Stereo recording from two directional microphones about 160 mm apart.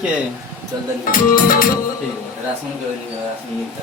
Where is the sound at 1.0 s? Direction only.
60° left (ahead or behind).